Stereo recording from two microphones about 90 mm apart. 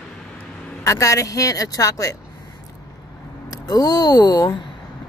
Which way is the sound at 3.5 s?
45° left (ahead or behind).